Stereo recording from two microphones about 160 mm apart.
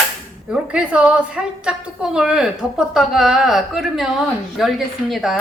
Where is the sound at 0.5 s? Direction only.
5° right (ahead or behind).